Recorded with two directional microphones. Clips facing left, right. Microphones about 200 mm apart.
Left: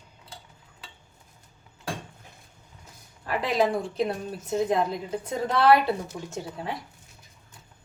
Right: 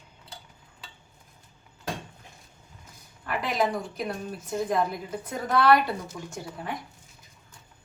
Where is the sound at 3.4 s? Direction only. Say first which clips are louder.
Left 3 dB; 30° left (ahead or behind).